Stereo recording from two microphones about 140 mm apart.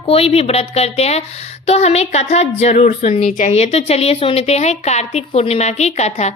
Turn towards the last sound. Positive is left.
turn(degrees=55)  # may be behind; listen again after turning